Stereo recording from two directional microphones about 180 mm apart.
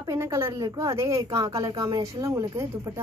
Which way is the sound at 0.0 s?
15° right (ahead or behind).